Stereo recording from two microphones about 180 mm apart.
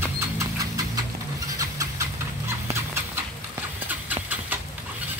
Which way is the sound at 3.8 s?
10° right (ahead or behind).